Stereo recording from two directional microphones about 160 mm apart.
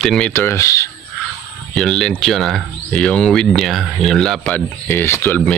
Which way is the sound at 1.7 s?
Centre (ahead or behind).